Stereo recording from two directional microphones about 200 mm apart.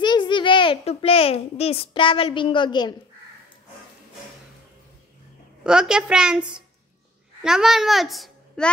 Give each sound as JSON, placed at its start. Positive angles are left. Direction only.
{"t": 0.0, "sound": "a child's voice", "side_deg": 20}
{"t": 5.6, "sound": "a woman's voice", "side_deg": -5}